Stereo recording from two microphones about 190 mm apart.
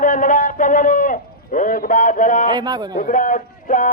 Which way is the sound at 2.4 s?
20° right (ahead or behind).